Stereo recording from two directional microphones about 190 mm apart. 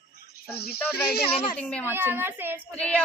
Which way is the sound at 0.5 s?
55° left (ahead or behind).